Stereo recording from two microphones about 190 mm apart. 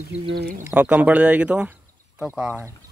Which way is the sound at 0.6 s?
10° right (ahead or behind).